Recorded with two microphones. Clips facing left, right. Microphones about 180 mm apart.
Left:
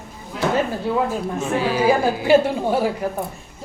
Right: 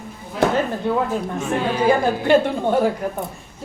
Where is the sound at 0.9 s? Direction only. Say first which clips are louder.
Even; 5° left (ahead or behind).